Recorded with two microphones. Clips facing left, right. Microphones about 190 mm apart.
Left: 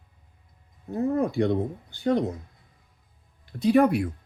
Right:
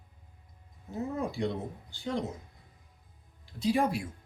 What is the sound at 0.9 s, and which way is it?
Speech, 60° left (ahead or behind).